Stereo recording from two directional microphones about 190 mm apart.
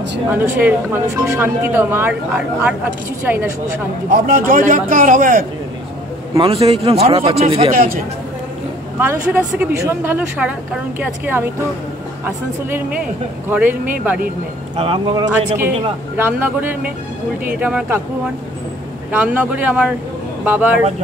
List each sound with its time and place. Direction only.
0.3 s speech: 10° right (ahead or behind)
4.1 s a man's voice: 45° right (ahead or behind)
6.3 s a man's voice: 30° right (ahead or behind)
7.7 s a man's voice: 50° right (ahead or behind)
9.6 s speech: 10° right (ahead or behind)
13.5 s speech: 10° right (ahead or behind)
14.8 s speech: 25° right (ahead or behind)
16.2 s speech: 10° right (ahead or behind)